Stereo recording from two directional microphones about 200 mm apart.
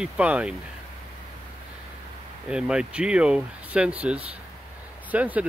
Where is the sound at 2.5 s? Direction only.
5° right (ahead or behind).